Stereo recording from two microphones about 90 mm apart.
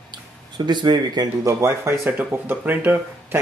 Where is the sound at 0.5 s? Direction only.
55° right (ahead or behind).